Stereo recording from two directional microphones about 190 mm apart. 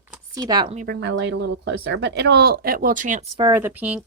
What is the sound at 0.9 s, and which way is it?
A woman's voice, 75° right (ahead or behind).